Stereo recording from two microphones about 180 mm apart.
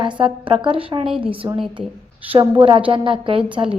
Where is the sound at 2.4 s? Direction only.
30° right (ahead or behind).